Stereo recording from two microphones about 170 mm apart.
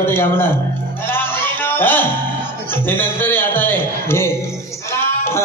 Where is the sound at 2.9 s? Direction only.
10° left (ahead or behind).